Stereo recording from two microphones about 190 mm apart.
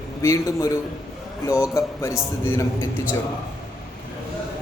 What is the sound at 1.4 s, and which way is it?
Speech, 15° left (ahead or behind).